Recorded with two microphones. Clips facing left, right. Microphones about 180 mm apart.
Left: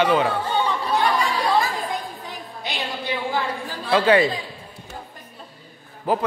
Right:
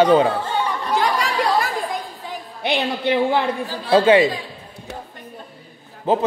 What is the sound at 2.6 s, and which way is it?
Speech, 65° right (ahead or behind).